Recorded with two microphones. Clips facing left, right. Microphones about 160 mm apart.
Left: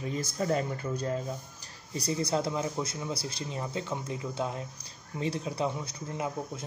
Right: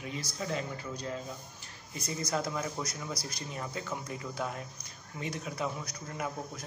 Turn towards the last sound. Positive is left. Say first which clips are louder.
# left 3 dB
turn(degrees=20)  # may be behind; listen again after turning